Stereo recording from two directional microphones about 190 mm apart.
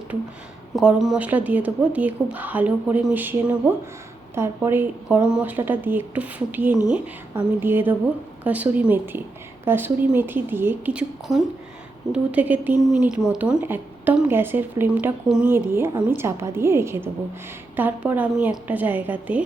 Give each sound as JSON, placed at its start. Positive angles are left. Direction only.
{"t": 0.8, "sound": "a woman's voice", "side_deg": -5}